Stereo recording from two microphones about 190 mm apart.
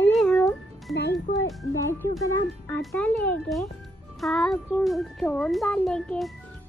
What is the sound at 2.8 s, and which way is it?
Speech, 5° left (ahead or behind).